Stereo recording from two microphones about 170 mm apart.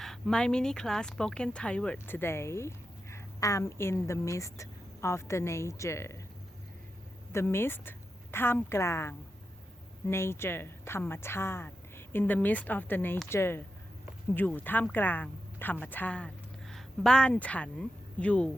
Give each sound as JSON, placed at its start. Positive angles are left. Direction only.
{"t": 0.0, "sound": "speech", "side_deg": 5}
{"t": 7.3, "sound": "a woman's voice", "side_deg": 15}